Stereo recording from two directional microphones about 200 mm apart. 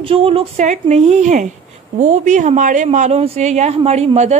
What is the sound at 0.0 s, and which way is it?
Speech, 25° right (ahead or behind).